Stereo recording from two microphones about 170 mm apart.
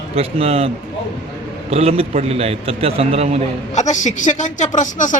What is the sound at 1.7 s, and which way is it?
A man's voice, 35° right (ahead or behind).